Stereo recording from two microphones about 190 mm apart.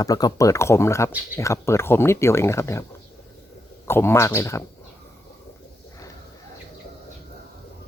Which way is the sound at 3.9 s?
10° left (ahead or behind).